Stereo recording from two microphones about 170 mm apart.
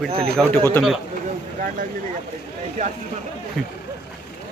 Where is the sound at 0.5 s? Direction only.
15° left (ahead or behind).